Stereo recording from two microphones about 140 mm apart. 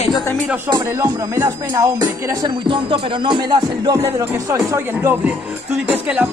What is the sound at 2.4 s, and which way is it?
Speech, 35° right (ahead or behind).